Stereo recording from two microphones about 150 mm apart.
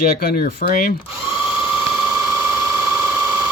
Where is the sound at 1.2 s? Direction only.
15° right (ahead or behind).